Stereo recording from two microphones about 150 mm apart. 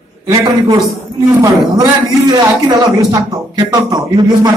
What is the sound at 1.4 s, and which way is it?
A man's voice, 25° right (ahead or behind).